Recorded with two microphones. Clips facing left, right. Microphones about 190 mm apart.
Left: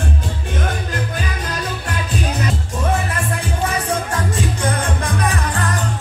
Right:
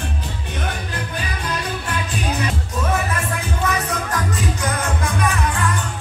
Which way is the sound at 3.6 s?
30° left (ahead or behind).